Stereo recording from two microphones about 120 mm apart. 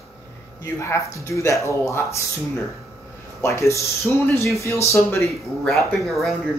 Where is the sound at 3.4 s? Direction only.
25° left (ahead or behind).